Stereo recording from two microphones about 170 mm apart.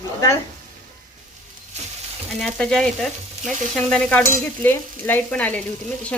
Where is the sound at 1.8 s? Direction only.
40° right (ahead or behind).